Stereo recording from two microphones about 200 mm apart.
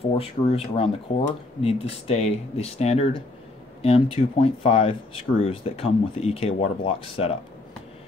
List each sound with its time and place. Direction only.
0.0 s speech: 30° left (ahead or behind)